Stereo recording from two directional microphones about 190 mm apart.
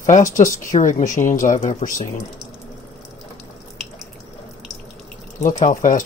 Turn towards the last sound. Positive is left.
turn(degrees=40)  # may be behind; listen again after turning